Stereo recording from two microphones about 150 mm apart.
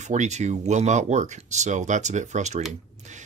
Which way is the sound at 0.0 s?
50° right (ahead or behind).